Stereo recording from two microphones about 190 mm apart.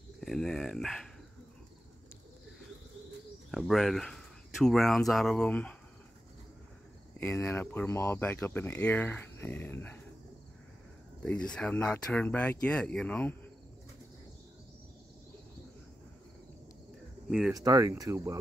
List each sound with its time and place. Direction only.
0.2 s dog: centre (ahead or behind)
3.5 s speech: centre (ahead or behind)
7.2 s speech: 15° left (ahead or behind)
11.2 s speech: 5° left (ahead or behind)
17.3 s speech: centre (ahead or behind)
17.6 s speech: 20° right (ahead or behind)